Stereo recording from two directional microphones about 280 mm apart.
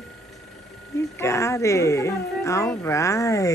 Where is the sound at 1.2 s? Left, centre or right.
Centre.